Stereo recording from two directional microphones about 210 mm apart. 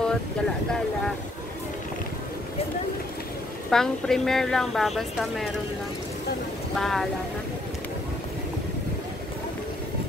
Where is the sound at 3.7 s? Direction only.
Centre (ahead or behind).